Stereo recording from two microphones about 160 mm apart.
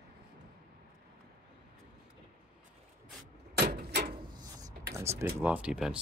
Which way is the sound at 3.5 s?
90° right.